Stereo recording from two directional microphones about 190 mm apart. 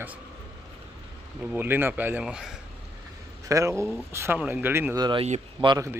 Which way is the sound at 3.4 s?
15° right (ahead or behind).